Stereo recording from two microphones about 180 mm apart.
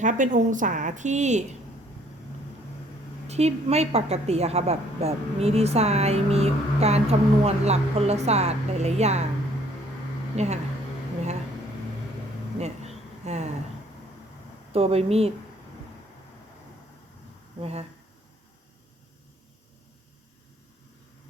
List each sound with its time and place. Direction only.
0.0 s a woman's voice: 45° right (ahead or behind)
3.2 s a woman's voice: 35° right (ahead or behind)
10.3 s a woman's voice: 40° right (ahead or behind)
12.5 s a sound: 35° right (ahead or behind)
14.7 s a woman's voice: 35° right (ahead or behind)
17.6 s a woman's voice: 35° right (ahead or behind)